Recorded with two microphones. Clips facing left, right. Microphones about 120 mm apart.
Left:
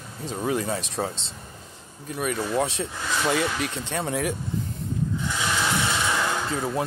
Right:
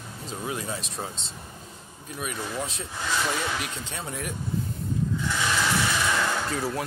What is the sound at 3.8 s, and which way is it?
Speech, 70° left (ahead or behind).